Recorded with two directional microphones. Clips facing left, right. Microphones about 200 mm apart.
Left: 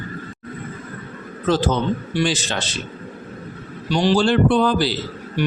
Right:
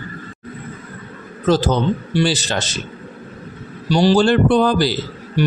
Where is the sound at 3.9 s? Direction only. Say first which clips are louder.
Right 3 dB; 35° right (ahead or behind).